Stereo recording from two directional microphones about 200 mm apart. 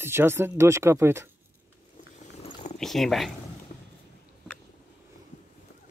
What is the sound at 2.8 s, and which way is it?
Speech, centre (ahead or behind).